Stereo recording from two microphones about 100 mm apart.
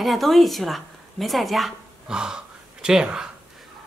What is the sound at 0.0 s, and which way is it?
A woman's voice, centre (ahead or behind).